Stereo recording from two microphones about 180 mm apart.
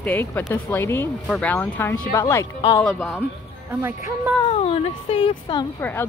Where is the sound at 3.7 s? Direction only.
15° right (ahead or behind).